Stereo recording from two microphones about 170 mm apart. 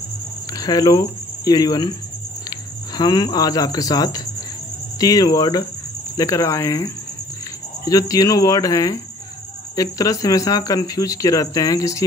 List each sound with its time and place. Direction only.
0.5 s speech: 20° left (ahead or behind)
3.0 s speech: 25° left (ahead or behind)